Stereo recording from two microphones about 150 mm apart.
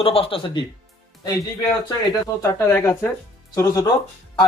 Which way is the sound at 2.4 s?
20° left (ahead or behind).